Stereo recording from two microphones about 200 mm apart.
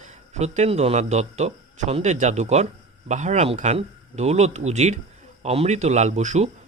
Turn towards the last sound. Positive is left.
turn(degrees=-35)  # may be behind; listen again after turning